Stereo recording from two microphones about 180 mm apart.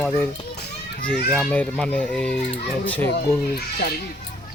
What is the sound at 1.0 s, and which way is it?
A child's voice, 5° left (ahead or behind).